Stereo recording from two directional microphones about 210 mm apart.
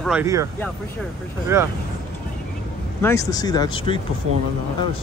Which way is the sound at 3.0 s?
15° left (ahead or behind).